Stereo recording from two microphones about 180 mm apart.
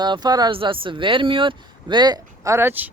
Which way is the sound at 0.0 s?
25° right (ahead or behind).